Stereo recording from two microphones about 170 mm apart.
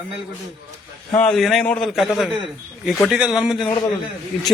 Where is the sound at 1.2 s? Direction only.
5° left (ahead or behind).